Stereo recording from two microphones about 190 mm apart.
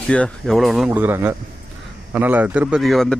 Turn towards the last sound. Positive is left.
turn(degrees=0)  # may be behind; listen again after turning